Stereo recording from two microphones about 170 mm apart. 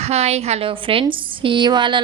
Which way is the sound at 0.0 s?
40° right (ahead or behind).